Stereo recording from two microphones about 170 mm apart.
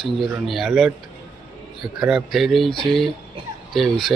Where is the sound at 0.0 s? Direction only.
Centre (ahead or behind).